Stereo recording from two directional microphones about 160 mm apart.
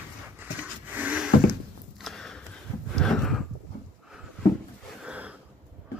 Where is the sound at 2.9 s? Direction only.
Centre (ahead or behind).